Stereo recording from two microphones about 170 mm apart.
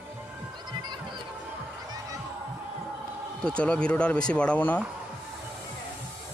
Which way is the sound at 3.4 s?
5° left (ahead or behind).